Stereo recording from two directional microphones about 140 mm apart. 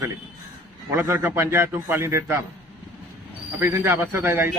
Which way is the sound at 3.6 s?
15° right (ahead or behind).